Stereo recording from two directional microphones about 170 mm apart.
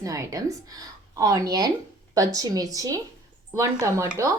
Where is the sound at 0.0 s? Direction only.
20° right (ahead or behind).